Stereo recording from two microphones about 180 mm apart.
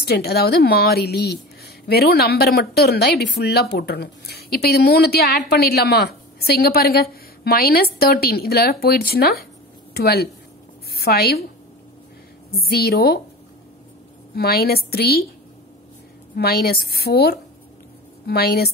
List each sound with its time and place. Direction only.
0.0 s a woman's voice: 65° left (ahead or behind)
12.5 s speech: 60° left (ahead or behind)
14.3 s speech: 60° left (ahead or behind)
16.3 s speech: 60° left (ahead or behind)